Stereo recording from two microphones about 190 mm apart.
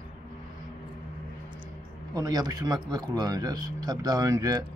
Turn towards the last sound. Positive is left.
turn(degrees=-20)  # may be behind; listen again after turning